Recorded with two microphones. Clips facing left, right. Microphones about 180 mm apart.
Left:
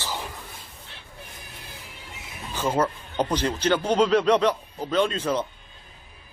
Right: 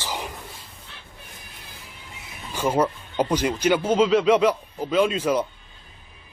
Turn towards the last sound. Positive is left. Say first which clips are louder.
# right 3 dB
turn(degrees=-10)  # may be behind; listen again after turning